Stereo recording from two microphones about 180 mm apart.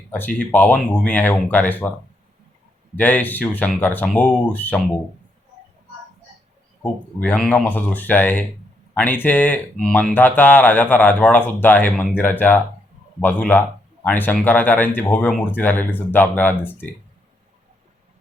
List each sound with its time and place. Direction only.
0.1 s speech: 10° left (ahead or behind)
2.9 s speech: 10° left (ahead or behind)
7.2 s speech: 10° left (ahead or behind)